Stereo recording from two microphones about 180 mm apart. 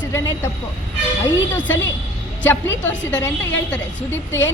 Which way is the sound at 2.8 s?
10° left (ahead or behind).